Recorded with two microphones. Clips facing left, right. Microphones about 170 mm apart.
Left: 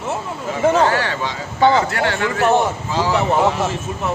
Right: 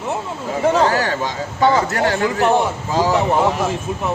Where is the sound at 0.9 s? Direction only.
40° right (ahead or behind).